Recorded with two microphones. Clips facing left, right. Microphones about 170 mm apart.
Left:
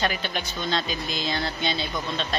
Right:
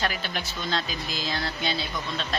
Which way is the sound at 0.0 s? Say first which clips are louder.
Left 2 dB; centre (ahead or behind).